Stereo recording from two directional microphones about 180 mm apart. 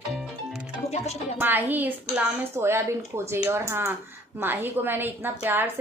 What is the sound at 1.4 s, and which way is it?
A woman's voice, 10° right (ahead or behind).